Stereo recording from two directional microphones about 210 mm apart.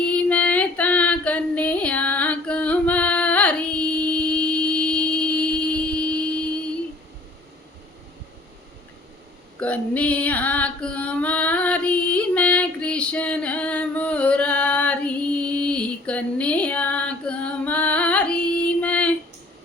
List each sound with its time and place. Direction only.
0.0 s female singing: 5° left (ahead or behind)
9.6 s female singing: 5° left (ahead or behind)